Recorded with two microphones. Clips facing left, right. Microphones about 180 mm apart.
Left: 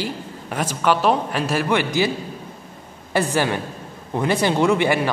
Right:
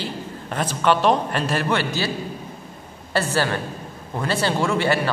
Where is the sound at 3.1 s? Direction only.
15° left (ahead or behind).